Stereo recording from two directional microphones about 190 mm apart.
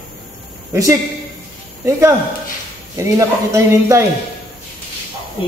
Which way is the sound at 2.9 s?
15° right (ahead or behind).